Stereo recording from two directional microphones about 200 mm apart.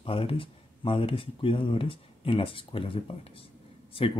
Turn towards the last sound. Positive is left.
turn(degrees=25)  # may be behind; listen again after turning